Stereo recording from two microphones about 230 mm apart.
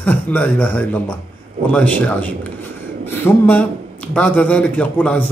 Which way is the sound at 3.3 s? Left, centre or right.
Centre.